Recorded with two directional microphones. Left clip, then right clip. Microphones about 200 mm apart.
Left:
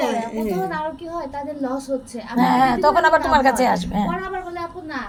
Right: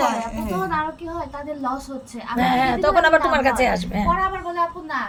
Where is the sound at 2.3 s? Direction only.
15° right (ahead or behind).